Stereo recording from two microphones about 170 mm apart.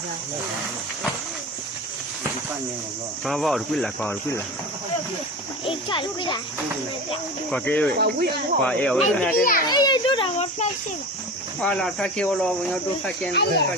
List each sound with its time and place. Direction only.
3.2 s speech: centre (ahead or behind)
5.6 s a child's voice: 30° left (ahead or behind)
7.5 s speech: 10° left (ahead or behind)
7.9 s speech: 70° right (ahead or behind)
8.6 s speech: 5° left (ahead or behind)
9.3 s a child's voice: 55° left (ahead or behind)
9.6 s a sound: 25° left (ahead or behind)
11.6 s speech: 5° left (ahead or behind)
13.3 s speech: 75° left (ahead or behind)